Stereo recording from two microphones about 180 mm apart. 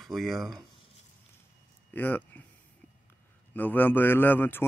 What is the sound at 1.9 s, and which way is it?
Speech, 10° left (ahead or behind).